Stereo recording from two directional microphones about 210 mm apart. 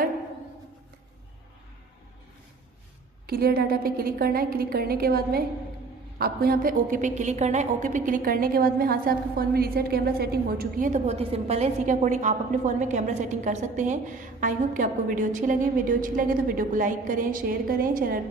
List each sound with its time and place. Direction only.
3.3 s a woman's voice: 45° right (ahead or behind)